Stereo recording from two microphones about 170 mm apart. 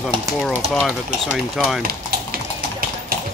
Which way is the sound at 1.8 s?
60° right (ahead or behind).